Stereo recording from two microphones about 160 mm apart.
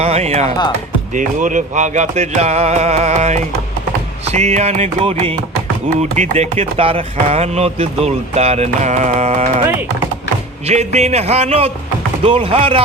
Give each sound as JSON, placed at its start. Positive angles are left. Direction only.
{"t": 0.0, "sound": "speech", "side_deg": -40}
{"t": 1.1, "sound": "speech", "side_deg": -55}
{"t": 10.7, "sound": "speech", "side_deg": -45}